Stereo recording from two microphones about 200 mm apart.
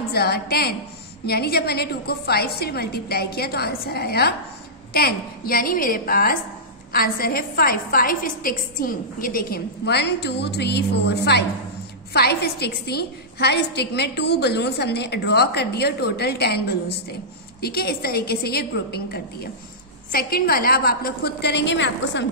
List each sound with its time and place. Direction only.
0.1 s a woman's voice: 50° left (ahead or behind)